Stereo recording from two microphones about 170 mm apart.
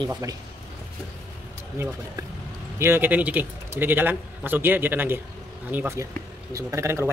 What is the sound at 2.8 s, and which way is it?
Speech, 15° right (ahead or behind).